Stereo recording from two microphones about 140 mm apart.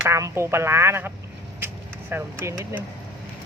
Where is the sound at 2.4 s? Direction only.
20° right (ahead or behind).